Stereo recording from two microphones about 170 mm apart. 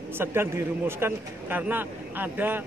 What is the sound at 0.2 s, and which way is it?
Speech, 15° right (ahead or behind).